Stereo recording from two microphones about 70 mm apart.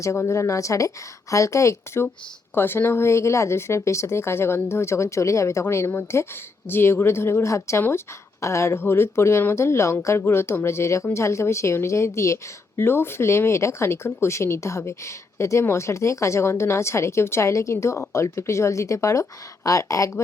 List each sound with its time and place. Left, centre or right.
0.0 s a woman's voice: left